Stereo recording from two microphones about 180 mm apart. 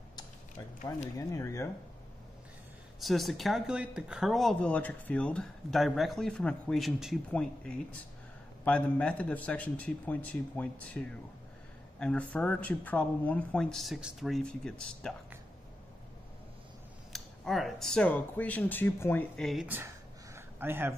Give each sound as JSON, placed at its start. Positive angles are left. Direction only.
{"t": 1.1, "sound": "a man's voice", "side_deg": 15}
{"t": 3.0, "sound": "a man's voice", "side_deg": 0}
{"t": 17.1, "sound": "speech", "side_deg": 0}
{"t": 20.3, "sound": "a sound", "side_deg": -10}